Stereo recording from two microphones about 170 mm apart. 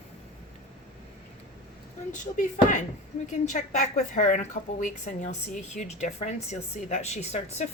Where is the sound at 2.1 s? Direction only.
45° left (ahead or behind).